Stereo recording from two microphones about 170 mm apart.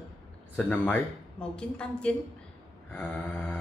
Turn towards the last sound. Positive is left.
turn(degrees=10)  # may be behind; listen again after turning